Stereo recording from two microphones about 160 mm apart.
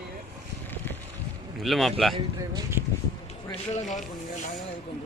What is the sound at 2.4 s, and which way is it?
Speech, 20° right (ahead or behind).